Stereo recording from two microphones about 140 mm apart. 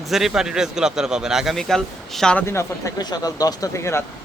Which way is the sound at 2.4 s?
20° left (ahead or behind).